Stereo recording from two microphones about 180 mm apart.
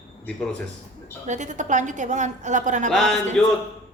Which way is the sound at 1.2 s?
40° right (ahead or behind).